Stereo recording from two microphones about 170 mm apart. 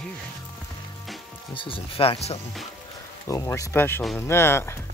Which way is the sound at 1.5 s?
30° left (ahead or behind).